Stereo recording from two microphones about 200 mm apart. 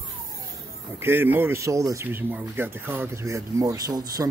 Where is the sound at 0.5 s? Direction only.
10° right (ahead or behind).